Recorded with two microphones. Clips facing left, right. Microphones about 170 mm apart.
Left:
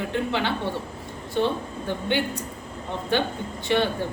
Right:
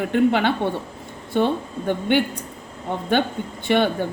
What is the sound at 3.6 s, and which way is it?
Speech, 55° right (ahead or behind).